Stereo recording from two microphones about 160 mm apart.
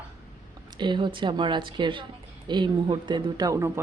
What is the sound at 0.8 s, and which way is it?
Speech, 30° right (ahead or behind).